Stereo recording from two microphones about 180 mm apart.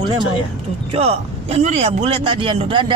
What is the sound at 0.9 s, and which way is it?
A man's voice, 35° right (ahead or behind).